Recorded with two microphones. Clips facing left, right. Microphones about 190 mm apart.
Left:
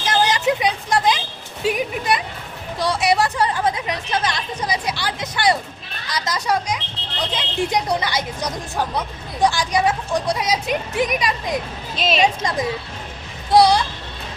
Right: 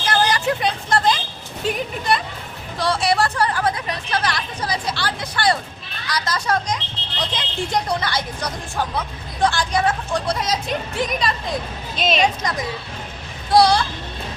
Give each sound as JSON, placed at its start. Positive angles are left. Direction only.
{"t": 0.0, "sound": "vehicle", "side_deg": 20}
{"t": 1.6, "sound": "a sound", "side_deg": 10}
{"t": 2.7, "sound": "a woman's voice", "side_deg": 20}
{"t": 11.9, "sound": "a woman's voice", "side_deg": 5}
{"t": 12.2, "sound": "a woman's voice", "side_deg": 25}